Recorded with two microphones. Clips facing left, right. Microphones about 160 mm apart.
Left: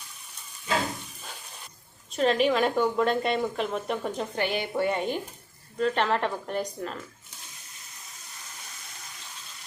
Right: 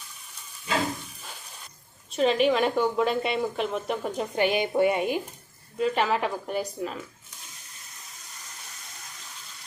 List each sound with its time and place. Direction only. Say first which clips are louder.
2.1 s a woman's voice: right 1 dB; centre (ahead or behind)
4.4 s a woman's voice: right 6 dB; 15° right (ahead or behind)